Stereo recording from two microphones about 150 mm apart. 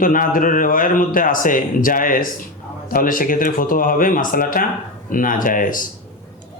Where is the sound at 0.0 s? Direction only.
65° left (ahead or behind).